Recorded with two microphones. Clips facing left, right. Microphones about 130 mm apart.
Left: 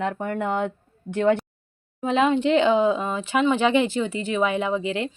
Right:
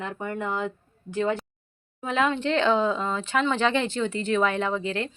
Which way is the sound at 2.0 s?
20° left (ahead or behind).